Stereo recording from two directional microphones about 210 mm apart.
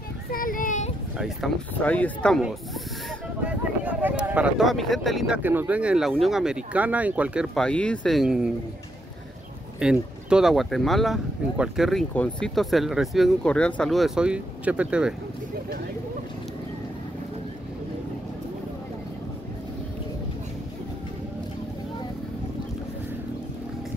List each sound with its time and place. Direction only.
0.3 s a sound: 40° left (ahead or behind)
1.1 s speech: centre (ahead or behind)
9.8 s speech: 5° right (ahead or behind)